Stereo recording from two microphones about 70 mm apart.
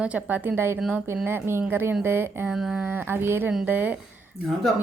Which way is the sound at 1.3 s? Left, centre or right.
Right.